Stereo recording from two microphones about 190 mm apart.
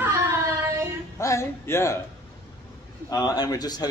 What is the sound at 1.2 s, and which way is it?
Speech, 15° left (ahead or behind).